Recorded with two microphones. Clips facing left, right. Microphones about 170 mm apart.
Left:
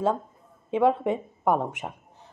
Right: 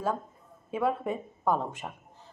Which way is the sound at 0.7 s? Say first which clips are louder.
Left 7 dB; 25° left (ahead or behind).